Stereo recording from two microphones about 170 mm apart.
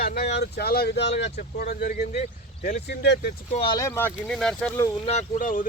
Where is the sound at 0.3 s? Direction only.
70° left (ahead or behind).